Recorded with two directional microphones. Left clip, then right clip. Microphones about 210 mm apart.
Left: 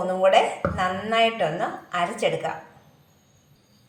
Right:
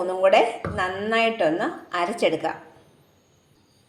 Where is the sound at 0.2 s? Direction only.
50° right (ahead or behind).